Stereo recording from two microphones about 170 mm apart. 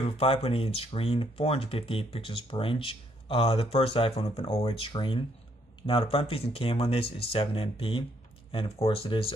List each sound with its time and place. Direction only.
0.0 s speech: 35° left (ahead or behind)